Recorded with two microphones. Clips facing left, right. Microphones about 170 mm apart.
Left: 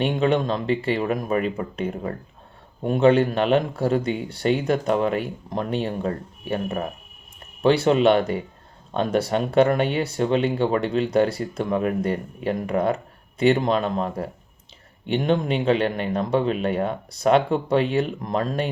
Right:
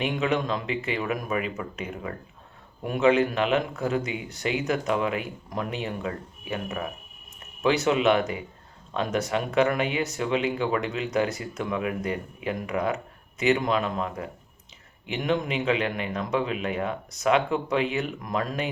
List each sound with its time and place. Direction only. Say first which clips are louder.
0.1 s speech: left 5 dB; 30° left (ahead or behind)